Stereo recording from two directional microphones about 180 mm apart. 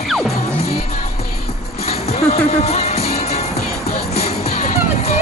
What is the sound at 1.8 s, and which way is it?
Music, 35° left (ahead or behind).